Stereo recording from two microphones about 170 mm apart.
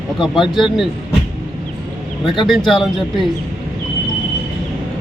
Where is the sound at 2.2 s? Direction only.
30° left (ahead or behind).